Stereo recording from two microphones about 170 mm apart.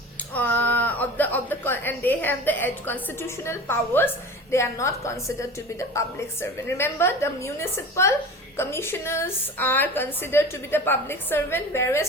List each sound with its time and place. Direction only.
0.3 s a woman's voice: 10° left (ahead or behind)